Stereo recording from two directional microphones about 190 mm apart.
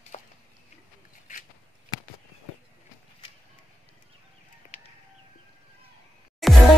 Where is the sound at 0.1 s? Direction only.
40° left (ahead or behind).